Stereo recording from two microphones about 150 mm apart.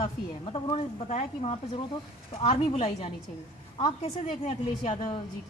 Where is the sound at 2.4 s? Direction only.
40° left (ahead or behind).